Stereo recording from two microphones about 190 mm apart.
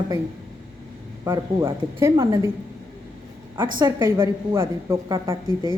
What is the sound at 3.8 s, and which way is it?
A woman's voice, 20° right (ahead or behind).